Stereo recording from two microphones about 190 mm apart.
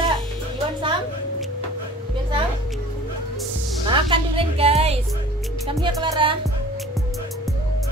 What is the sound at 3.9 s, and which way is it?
A woman's voice, 25° right (ahead or behind).